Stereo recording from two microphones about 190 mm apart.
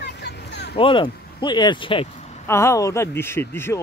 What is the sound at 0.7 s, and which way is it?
Speech, 25° left (ahead or behind).